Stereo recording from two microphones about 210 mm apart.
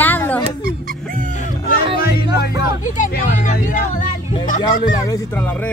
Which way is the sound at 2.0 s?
50° left (ahead or behind).